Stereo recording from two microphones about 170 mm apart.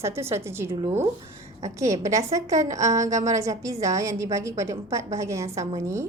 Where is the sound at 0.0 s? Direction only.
15° right (ahead or behind).